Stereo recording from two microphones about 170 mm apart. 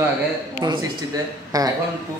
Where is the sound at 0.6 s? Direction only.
25° right (ahead or behind).